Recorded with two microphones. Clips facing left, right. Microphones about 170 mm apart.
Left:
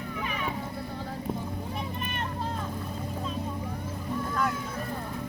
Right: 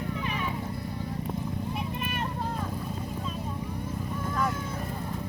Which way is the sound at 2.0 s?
10° right (ahead or behind).